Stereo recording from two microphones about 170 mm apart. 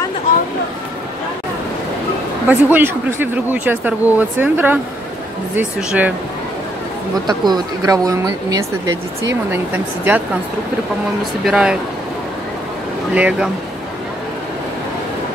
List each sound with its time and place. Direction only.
2.4 s speech: 10° right (ahead or behind)
7.2 s speech: 25° right (ahead or behind)
9.5 s speech: 10° right (ahead or behind)
11.4 s speech: 5° right (ahead or behind)
13.1 s speech: 5° right (ahead or behind)